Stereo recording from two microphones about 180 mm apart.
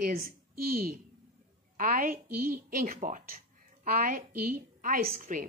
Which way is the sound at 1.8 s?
50° right (ahead or behind).